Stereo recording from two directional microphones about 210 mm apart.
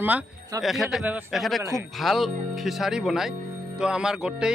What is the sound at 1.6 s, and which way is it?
Speech, 15° right (ahead or behind).